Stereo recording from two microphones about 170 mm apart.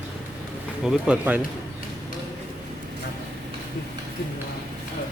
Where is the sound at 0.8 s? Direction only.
5° right (ahead or behind).